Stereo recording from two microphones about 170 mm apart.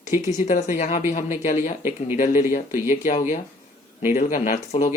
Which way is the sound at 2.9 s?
45° left (ahead or behind).